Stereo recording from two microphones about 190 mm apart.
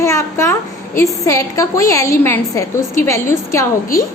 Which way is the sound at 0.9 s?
15° left (ahead or behind).